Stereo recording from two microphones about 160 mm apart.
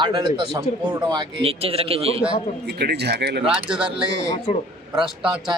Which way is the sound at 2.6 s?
90° right.